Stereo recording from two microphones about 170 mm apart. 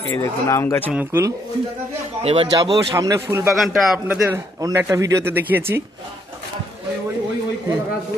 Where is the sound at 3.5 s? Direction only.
Centre (ahead or behind).